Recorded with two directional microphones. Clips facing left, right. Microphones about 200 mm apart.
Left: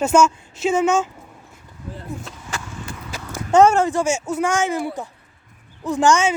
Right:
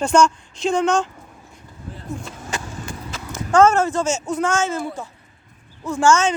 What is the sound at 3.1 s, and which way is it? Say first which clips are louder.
Speech: left 2 dB; 15° left (ahead or behind).